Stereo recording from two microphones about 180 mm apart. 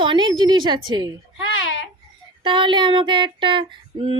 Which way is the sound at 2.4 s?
25° right (ahead or behind).